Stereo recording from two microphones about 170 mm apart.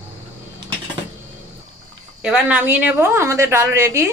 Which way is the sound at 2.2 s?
5° right (ahead or behind).